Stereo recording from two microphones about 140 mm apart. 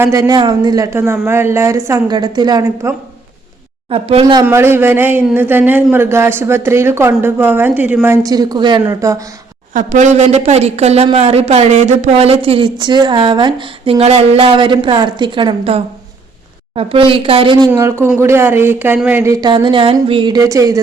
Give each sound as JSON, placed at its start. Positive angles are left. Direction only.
{"t": 0.0, "sound": "speech", "side_deg": -25}
{"t": 3.8, "sound": "speech", "side_deg": -45}
{"t": 4.4, "sound": "speech", "side_deg": -15}
{"t": 9.7, "sound": "a woman's voice", "side_deg": -65}
{"t": 17.7, "sound": "speech", "side_deg": -20}
{"t": 19.5, "sound": "a woman's voice", "side_deg": -35}